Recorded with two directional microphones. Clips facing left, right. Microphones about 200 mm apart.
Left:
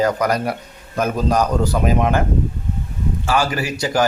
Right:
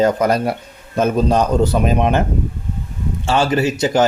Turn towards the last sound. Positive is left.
turn(degrees=-20)  # may be behind; listen again after turning